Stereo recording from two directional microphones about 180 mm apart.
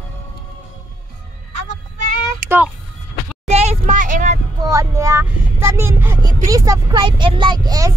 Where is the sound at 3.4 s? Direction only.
35° right (ahead or behind).